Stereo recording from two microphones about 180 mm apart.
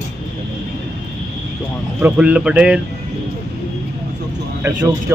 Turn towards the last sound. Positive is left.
turn(degrees=-15)  # may be behind; listen again after turning